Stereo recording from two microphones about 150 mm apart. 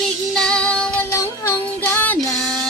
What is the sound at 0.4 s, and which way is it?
Child singing, 5° left (ahead or behind).